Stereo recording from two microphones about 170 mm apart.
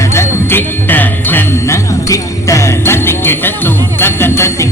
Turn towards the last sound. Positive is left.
turn(degrees=15)  # may be behind; listen again after turning